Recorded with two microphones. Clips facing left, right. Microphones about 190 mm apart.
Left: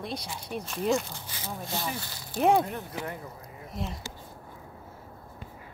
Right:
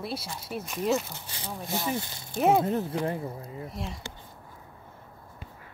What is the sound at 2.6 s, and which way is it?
Speech, 25° right (ahead or behind).